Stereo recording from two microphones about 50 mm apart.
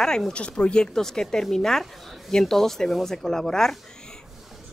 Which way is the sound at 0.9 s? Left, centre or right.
Centre.